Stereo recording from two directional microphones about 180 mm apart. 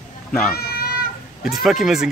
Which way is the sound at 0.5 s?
60° left (ahead or behind).